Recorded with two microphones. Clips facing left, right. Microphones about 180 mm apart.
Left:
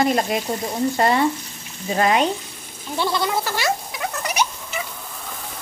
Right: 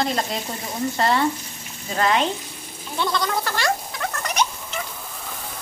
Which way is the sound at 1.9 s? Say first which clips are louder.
Left 2 dB; 15° left (ahead or behind).